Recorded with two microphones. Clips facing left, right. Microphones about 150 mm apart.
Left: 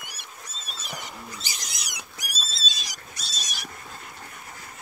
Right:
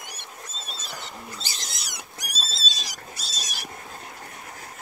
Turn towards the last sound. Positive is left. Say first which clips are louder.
# right 2 dB
turn(degrees=-5)  # may be behind; listen again after turning